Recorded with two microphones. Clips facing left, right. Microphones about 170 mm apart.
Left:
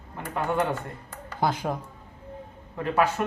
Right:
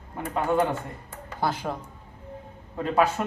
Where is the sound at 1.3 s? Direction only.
15° left (ahead or behind).